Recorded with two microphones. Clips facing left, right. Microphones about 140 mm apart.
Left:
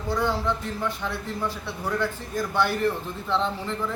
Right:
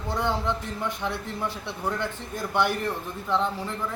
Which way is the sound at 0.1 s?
20° right (ahead or behind).